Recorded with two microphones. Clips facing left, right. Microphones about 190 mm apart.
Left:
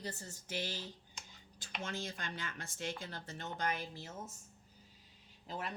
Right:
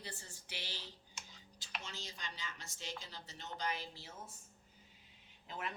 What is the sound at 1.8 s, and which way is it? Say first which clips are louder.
Speech: left 11 dB; 55° left (ahead or behind).